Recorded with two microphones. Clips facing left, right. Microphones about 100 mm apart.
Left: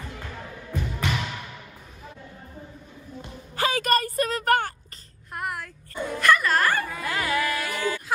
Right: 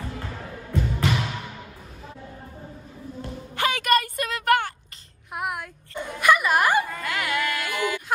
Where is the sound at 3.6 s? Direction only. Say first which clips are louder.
Right 1 dB; 35° left (ahead or behind).